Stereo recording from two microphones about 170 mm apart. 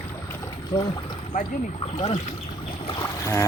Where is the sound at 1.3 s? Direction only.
50° left (ahead or behind).